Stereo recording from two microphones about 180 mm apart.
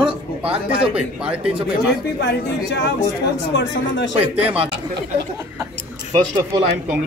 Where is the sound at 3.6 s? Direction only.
85° left.